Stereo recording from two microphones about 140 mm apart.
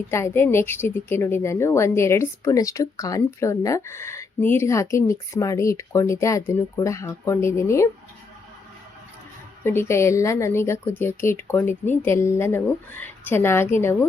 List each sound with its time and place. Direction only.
0.1 s a woman's voice: 20° left (ahead or behind)
9.6 s a woman's voice: 20° left (ahead or behind)